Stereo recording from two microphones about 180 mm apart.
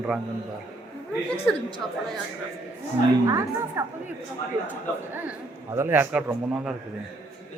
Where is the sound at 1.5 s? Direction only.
5° left (ahead or behind).